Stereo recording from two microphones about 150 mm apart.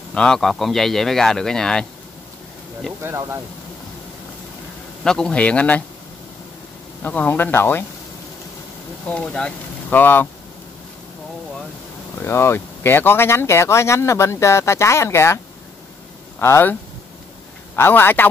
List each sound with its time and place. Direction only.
0.1 s a man's voice: 5° left (ahead or behind)
3.0 s speech: 15° right (ahead or behind)
5.0 s speech: 5° left (ahead or behind)
7.0 s speech: 10° left (ahead or behind)
9.0 s speech: 5° left (ahead or behind)
12.2 s speech: 15° left (ahead or behind)
17.7 s speech: 15° left (ahead or behind)